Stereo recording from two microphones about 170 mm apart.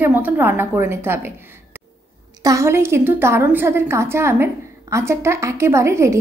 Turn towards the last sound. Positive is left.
turn(degrees=-15)  # may be behind; listen again after turning